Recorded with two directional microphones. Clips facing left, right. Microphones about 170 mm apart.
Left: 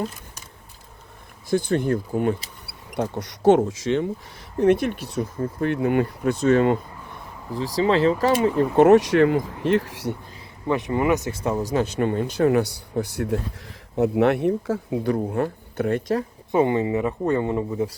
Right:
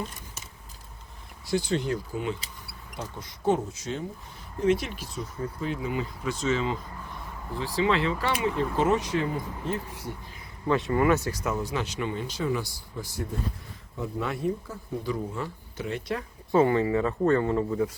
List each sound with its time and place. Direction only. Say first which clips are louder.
1.5 s speech: left 6 dB; 55° left (ahead or behind); by 4.0 s 90° left
4.6 s speech: left 6 dB; 60° left (ahead or behind)
7.5 s speech: left 5 dB; 40° left (ahead or behind)
8.8 s speech: left 12 dB; 75° left (ahead or behind)
10.7 s speech: left 2 dB; 20° left (ahead or behind)
11.7 s speech: left 8 dB; 50° left (ahead or behind)
16.5 s speech: left 2 dB; 20° left (ahead or behind)